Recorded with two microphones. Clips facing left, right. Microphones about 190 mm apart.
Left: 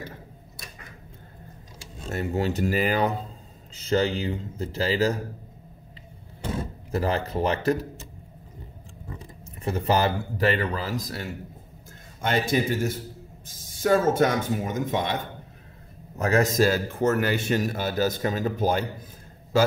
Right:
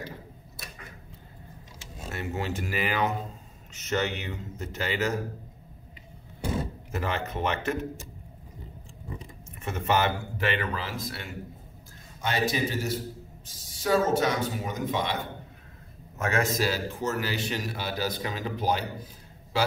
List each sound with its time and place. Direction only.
2.0 s speech: 40° left (ahead or behind)
6.9 s speech: 35° left (ahead or behind)
9.7 s speech: 35° left (ahead or behind)
12.2 s a man's voice: 50° left (ahead or behind)
16.2 s a man's voice: 40° left (ahead or behind)